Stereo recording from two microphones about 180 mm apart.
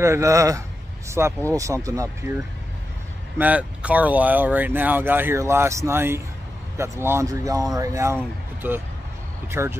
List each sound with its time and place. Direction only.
0.0 s speech: 15° right (ahead or behind)
3.3 s speech: 10° right (ahead or behind)